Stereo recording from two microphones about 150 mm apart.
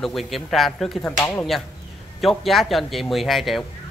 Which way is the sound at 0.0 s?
Centre (ahead or behind).